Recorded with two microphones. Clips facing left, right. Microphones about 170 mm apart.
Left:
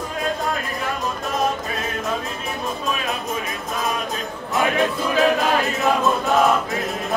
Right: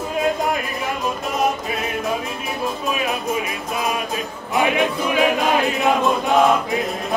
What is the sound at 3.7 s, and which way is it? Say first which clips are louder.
Music: right 2 dB; 10° right (ahead or behind).